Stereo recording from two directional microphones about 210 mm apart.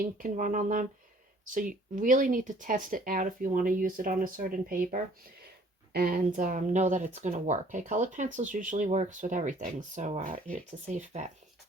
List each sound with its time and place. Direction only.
0.2 s speech: 40° right (ahead or behind)